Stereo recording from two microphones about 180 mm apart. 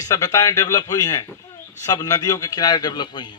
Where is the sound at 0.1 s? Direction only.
15° left (ahead or behind).